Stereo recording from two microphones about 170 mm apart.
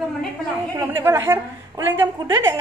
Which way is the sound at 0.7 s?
15° right (ahead or behind).